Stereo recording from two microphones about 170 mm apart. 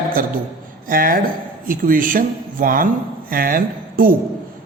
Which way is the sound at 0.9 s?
55° right (ahead or behind).